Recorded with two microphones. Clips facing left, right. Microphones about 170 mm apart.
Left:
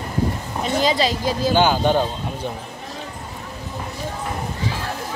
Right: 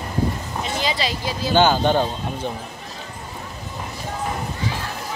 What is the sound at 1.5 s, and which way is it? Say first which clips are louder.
Speech: right 1 dB; 10° left (ahead or behind).